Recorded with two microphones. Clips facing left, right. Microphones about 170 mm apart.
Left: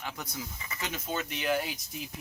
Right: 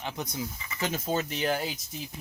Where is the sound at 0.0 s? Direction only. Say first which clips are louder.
Right 5 dB; 20° right (ahead or behind).